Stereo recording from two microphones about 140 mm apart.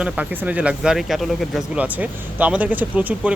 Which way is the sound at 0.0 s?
10° right (ahead or behind).